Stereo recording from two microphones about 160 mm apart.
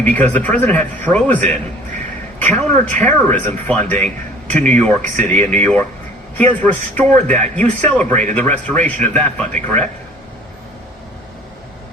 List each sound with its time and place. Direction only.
0.0 s speech: 10° left (ahead or behind)